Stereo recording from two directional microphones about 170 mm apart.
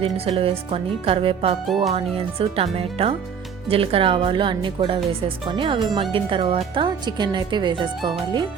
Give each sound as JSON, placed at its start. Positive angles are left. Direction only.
{"t": 0.0, "sound": "speech", "side_deg": -35}
{"t": 1.6, "sound": "speech", "side_deg": 0}
{"t": 1.9, "sound": "speech", "side_deg": -35}